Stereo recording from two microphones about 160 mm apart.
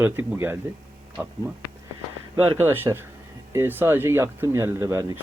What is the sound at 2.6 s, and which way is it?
Speech, 15° right (ahead or behind).